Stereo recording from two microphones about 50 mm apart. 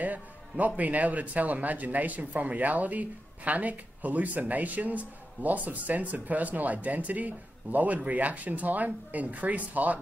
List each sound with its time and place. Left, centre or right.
0.0 s speech: right